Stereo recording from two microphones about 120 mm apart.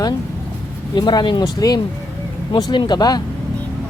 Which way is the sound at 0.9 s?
40° left (ahead or behind).